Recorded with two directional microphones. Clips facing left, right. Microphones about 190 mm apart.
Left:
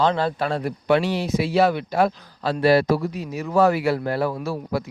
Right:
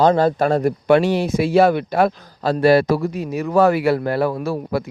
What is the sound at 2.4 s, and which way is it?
Speech, 40° right (ahead or behind).